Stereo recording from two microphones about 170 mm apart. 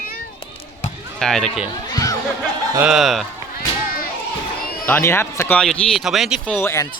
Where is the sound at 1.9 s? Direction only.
20° left (ahead or behind).